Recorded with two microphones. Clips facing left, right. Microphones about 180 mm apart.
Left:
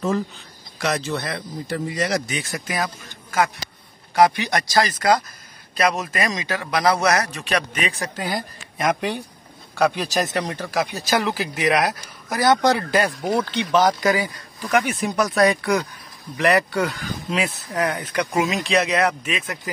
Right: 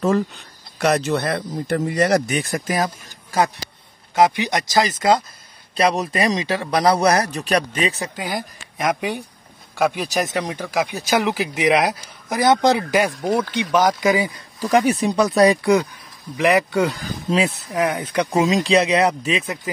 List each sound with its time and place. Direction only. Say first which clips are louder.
0.7 s speech: right 5 dB; 60° right (ahead or behind)
2.5 s a man's voice: right 3 dB; 40° right (ahead or behind)
4.1 s a man's voice: even; 20° right (ahead or behind)
8.2 s a man's voice: even; 10° right (ahead or behind)
13.2 s speech: right 2 dB; centre (ahead or behind)
13.5 s a man's voice: even; 10° right (ahead or behind)
14.6 s a man's voice: right 4 dB; 30° right (ahead or behind)
16.3 s a man's voice: right 2 dB; 15° right (ahead or behind)
16.8 s a man's voice: right 3 dB; 30° right (ahead or behind)
17.7 s a man's voice: right 3 dB; 15° right (ahead or behind)
18.3 s a man's voice: right 4 dB; 30° right (ahead or behind)
19.4 s speech: right 3 dB; 20° right (ahead or behind)